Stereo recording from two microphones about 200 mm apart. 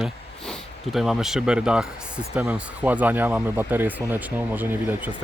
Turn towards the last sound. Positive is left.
turn(degrees=-10)  # may be behind; listen again after turning